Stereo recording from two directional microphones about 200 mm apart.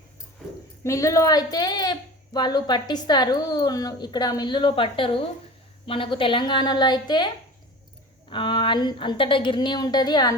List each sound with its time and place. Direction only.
0.9 s a woman's voice: 15° left (ahead or behind)
8.3 s a woman's voice: 25° left (ahead or behind)